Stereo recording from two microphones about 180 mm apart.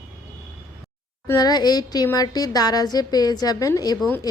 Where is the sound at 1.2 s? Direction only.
20° left (ahead or behind).